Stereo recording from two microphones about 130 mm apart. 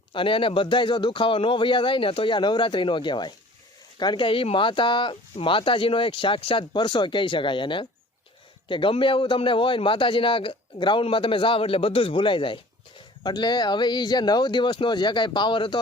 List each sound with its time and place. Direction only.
0.1 s speech: 40° left (ahead or behind)